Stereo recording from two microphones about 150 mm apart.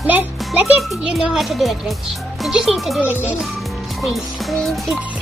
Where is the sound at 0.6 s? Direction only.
5° right (ahead or behind).